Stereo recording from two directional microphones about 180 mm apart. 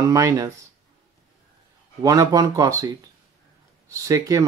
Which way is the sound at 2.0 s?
20° right (ahead or behind).